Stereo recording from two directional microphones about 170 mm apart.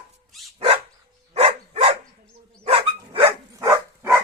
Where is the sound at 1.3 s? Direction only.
40° right (ahead or behind).